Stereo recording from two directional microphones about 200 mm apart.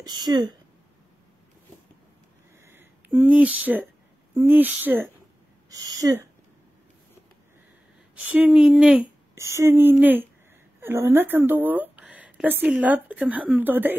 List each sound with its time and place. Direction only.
0.0 s speech: 20° right (ahead or behind)
2.6 s a sound: 10° right (ahead or behind)
4.3 s speech: 10° right (ahead or behind)
8.2 s speech: 5° right (ahead or behind)